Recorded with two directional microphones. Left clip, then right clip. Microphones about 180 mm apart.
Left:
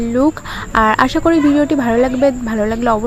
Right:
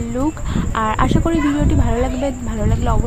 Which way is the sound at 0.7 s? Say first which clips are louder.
Left 6 dB; 30° left (ahead or behind).